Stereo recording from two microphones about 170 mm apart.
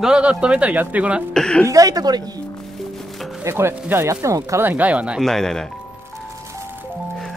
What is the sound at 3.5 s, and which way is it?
Speech, 15° right (ahead or behind).